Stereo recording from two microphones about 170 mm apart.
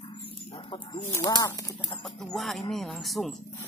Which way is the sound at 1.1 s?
20° left (ahead or behind).